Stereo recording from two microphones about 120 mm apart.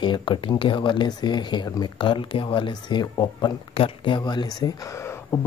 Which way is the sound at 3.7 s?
45° left (ahead or behind).